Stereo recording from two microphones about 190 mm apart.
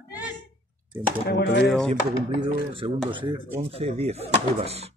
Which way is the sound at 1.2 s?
60° left (ahead or behind).